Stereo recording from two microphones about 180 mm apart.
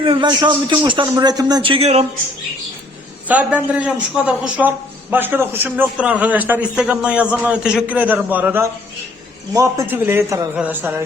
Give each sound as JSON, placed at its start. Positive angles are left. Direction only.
{"t": 0.0, "sound": "a man's voice", "side_deg": -25}
{"t": 3.2, "sound": "a man's voice", "side_deg": -10}